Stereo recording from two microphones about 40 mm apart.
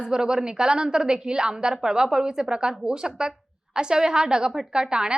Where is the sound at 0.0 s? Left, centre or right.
Centre.